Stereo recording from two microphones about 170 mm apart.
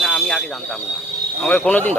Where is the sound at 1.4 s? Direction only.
5° left (ahead or behind).